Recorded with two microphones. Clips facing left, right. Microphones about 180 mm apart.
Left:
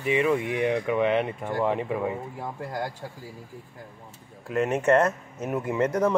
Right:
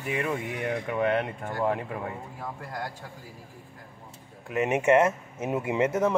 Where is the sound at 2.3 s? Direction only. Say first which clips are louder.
Left 4 dB; 25° left (ahead or behind).